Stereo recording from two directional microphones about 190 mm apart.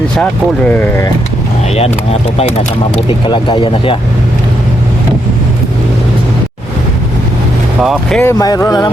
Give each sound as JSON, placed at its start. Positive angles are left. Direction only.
{"t": 0.2, "sound": "speech", "side_deg": 5}
{"t": 3.1, "sound": "speech", "side_deg": 25}
{"t": 7.8, "sound": "speech", "side_deg": 0}
{"t": 8.2, "sound": "speech", "side_deg": 15}